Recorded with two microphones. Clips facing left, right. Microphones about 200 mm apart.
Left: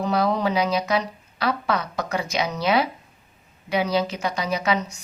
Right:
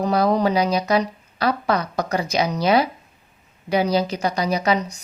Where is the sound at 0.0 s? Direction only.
40° right (ahead or behind).